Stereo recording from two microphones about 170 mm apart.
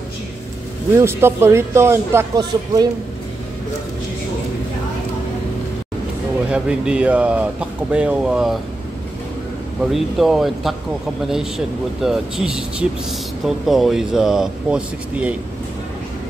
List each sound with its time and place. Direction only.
0.9 s speech: 15° right (ahead or behind)
6.5 s speech: 5° right (ahead or behind)
9.9 s speech: centre (ahead or behind)